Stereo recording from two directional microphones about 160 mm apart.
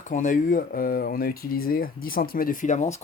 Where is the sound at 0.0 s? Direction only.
55° left (ahead or behind).